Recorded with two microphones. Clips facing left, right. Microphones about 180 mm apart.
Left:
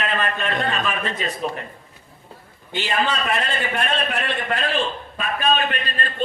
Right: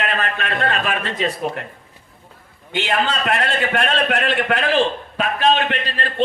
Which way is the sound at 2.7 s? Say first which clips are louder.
Right 2 dB; 75° right (ahead or behind).